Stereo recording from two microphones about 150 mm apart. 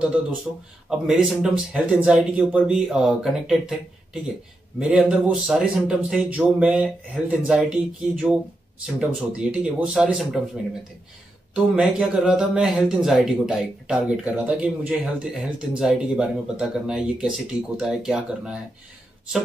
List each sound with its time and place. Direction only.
0.8 s a man's voice: 5° right (ahead or behind)
11.5 s a man's voice: 5° right (ahead or behind)